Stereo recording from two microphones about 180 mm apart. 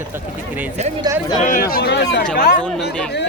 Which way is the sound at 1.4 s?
50° left (ahead or behind).